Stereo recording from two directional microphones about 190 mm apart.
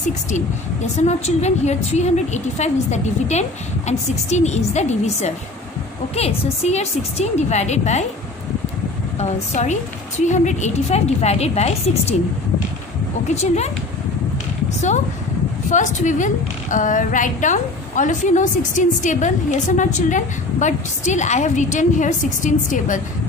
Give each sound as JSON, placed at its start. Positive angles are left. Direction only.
{"t": 0.9, "sound": "a woman's voice", "side_deg": 35}
{"t": 9.2, "sound": "a woman's voice", "side_deg": 35}
{"t": 13.3, "sound": "a woman's voice", "side_deg": 35}
{"t": 15.7, "sound": "a woman's voice", "side_deg": 40}